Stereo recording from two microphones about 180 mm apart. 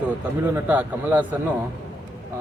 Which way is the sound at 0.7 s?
10° right (ahead or behind).